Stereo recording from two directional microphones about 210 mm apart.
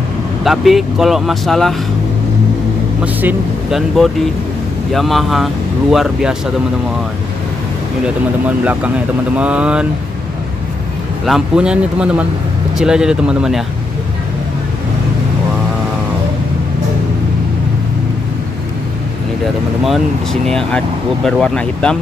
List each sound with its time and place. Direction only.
0.4 s speech: centre (ahead or behind)
3.0 s speech: 10° right (ahead or behind)
9.4 s speech: 5° right (ahead or behind)
11.2 s speech: 5° right (ahead or behind)
20.4 s speech: centre (ahead or behind)